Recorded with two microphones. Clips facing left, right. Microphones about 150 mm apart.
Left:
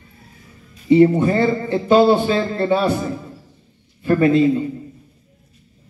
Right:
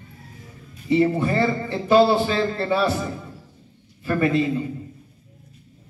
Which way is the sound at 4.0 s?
25° left (ahead or behind).